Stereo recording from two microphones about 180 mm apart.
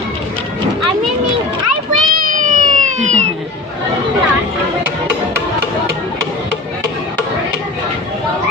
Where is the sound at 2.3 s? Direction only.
45° right (ahead or behind).